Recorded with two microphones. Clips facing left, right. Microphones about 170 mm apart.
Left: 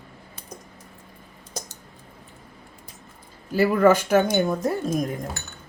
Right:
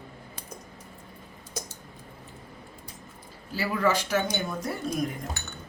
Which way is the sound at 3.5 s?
50° left (ahead or behind).